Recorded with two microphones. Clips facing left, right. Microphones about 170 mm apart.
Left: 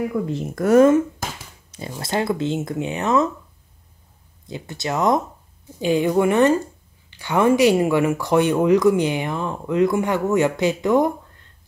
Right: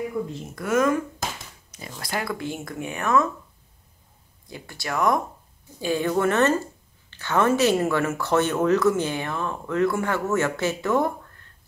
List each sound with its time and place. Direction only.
0.2 s speech: 90° left
0.6 s speech: 35° left (ahead or behind)
4.5 s speech: 20° left (ahead or behind)